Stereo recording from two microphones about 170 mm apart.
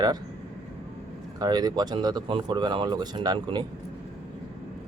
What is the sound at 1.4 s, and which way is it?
Speech, 25° right (ahead or behind).